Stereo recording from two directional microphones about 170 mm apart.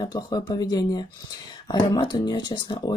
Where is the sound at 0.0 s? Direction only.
25° left (ahead or behind).